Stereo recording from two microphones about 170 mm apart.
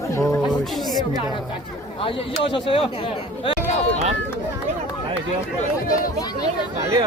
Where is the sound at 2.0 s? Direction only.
30° left (ahead or behind).